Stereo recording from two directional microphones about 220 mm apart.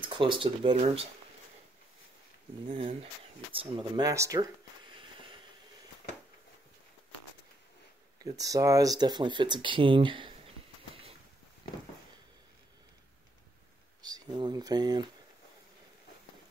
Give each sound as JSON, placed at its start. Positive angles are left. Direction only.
{"t": 0.0, "sound": "speech", "side_deg": -20}
{"t": 2.7, "sound": "speech", "side_deg": -30}
{"t": 8.2, "sound": "speech", "side_deg": -15}
{"t": 14.0, "sound": "speech", "side_deg": -20}